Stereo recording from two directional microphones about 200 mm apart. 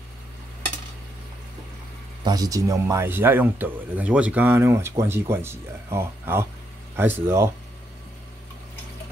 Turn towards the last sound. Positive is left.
turn(degrees=-10)  # may be behind; listen again after turning